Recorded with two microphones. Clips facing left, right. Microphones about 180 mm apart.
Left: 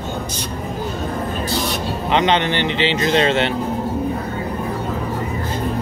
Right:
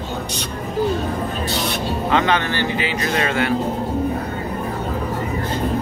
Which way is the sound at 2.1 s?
20° left (ahead or behind).